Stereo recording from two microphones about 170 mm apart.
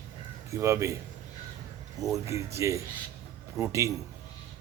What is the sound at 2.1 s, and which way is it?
Speech, 15° right (ahead or behind).